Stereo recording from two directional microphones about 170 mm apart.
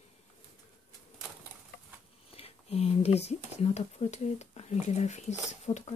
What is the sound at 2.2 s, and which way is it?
Speech, 35° left (ahead or behind).